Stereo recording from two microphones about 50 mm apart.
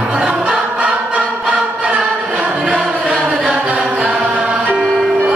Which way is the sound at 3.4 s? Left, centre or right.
Right.